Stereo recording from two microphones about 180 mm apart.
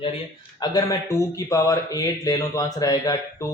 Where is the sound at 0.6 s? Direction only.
20° left (ahead or behind).